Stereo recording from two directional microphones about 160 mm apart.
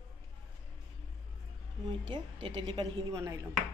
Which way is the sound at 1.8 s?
35° right (ahead or behind).